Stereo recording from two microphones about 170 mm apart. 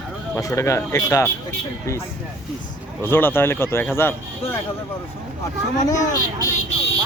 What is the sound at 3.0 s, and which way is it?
Speech, 10° left (ahead or behind).